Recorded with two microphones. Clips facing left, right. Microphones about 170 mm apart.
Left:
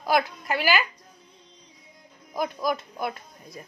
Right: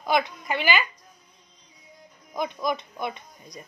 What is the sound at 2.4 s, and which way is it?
Speech, 5° left (ahead or behind).